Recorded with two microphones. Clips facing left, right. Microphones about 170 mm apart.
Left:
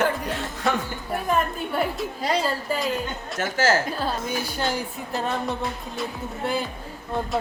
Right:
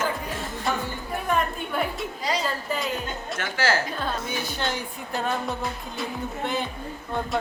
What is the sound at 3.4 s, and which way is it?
Speech, 40° left (ahead or behind).